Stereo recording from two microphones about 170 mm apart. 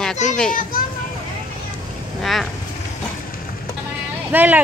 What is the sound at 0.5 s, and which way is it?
Speech, 55° left (ahead or behind).